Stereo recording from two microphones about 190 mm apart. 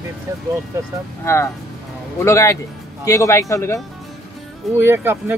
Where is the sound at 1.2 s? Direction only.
15° left (ahead or behind).